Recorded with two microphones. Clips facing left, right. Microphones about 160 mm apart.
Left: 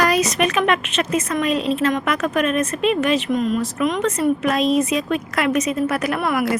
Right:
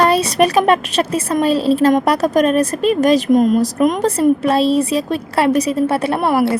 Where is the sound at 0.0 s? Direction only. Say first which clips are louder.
Right 5 dB; 30° right (ahead or behind).